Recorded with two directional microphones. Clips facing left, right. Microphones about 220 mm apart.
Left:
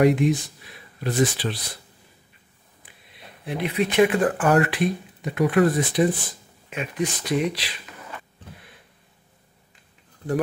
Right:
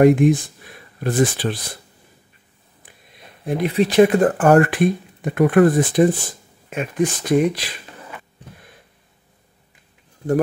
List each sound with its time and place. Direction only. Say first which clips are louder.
0.0 s speech: right 5 dB; 50° right (ahead or behind)
3.4 s speech: right 6 dB; 40° right (ahead or behind)